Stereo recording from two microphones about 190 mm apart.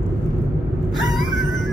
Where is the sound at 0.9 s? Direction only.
Centre (ahead or behind).